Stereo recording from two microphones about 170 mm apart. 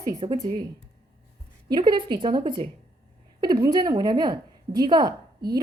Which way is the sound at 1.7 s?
25° right (ahead or behind).